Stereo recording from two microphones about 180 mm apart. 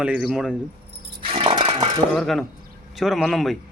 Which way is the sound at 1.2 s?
30° right (ahead or behind).